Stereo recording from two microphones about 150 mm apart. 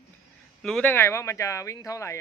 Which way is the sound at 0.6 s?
5° left (ahead or behind).